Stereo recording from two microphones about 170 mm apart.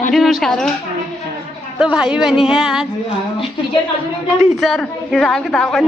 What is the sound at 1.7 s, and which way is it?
Speech, 5° right (ahead or behind).